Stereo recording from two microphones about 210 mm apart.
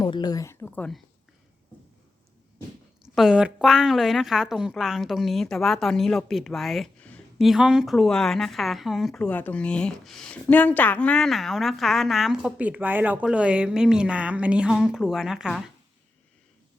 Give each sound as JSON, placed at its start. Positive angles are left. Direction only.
{"t": 0.0, "sound": "speech", "side_deg": 20}
{"t": 0.6, "sound": "speech", "side_deg": 5}
{"t": 3.2, "sound": "a woman's voice", "side_deg": -5}